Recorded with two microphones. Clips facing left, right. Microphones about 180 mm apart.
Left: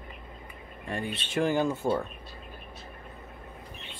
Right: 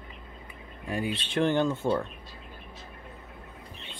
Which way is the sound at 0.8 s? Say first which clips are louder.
Right 3 dB; 5° right (ahead or behind).